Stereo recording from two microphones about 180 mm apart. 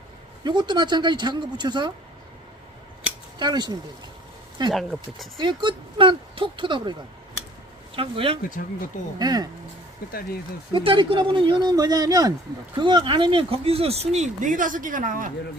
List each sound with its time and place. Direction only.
0.4 s speech: 25° right (ahead or behind)
3.3 s speech: 25° right (ahead or behind)
4.7 s speech: centre (ahead or behind)
5.4 s speech: 25° right (ahead or behind)
7.9 s speech: 30° right (ahead or behind)
10.1 s speech: 55° left (ahead or behind)
10.8 s speech: 30° right (ahead or behind); by 15.3 s 45° right (ahead or behind)